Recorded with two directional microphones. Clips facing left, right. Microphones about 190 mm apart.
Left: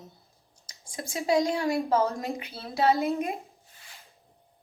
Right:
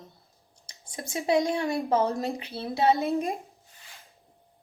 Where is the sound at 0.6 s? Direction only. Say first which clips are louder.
Left 1 dB; 25° right (ahead or behind).